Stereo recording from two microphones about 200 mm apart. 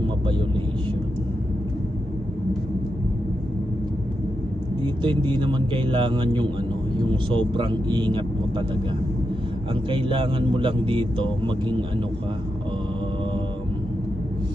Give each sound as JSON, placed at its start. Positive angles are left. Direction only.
{"t": 5.0, "sound": "speech", "side_deg": -25}
{"t": 9.9, "sound": "speech", "side_deg": -25}